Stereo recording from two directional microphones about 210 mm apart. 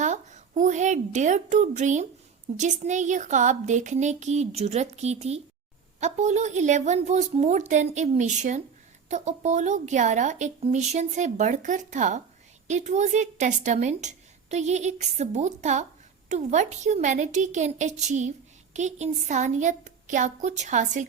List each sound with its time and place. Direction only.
0.0 s a woman's voice: 35° right (ahead or behind)